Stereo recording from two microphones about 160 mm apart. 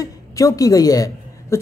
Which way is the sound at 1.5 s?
15° left (ahead or behind).